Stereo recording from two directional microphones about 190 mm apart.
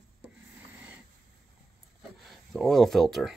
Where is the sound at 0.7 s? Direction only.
5° right (ahead or behind).